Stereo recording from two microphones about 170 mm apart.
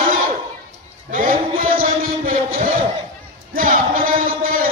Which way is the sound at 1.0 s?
50° right (ahead or behind).